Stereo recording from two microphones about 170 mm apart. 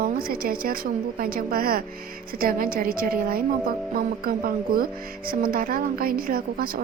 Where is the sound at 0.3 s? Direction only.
60° right (ahead or behind).